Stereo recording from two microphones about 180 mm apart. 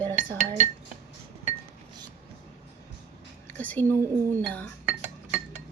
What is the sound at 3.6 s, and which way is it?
A woman's voice, 10° left (ahead or behind).